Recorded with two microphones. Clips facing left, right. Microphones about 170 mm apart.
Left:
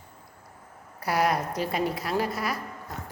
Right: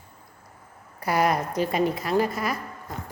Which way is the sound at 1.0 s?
Centre (ahead or behind).